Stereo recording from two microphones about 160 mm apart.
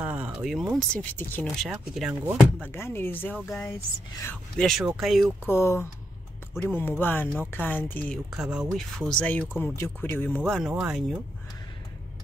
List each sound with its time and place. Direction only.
0.0 s speech: 10° right (ahead or behind)
0.7 s speech: 10° left (ahead or behind)
1.7 s speech: 5° right (ahead or behind)
2.6 s speech: 15° left (ahead or behind)
3.3 s speech: centre (ahead or behind)
5.4 s speech: 15° left (ahead or behind)
8.3 s speech: 5° right (ahead or behind)
10.7 s speech: 5° right (ahead or behind)